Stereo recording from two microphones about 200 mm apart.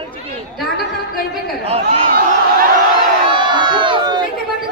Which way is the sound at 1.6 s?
30° right (ahead or behind).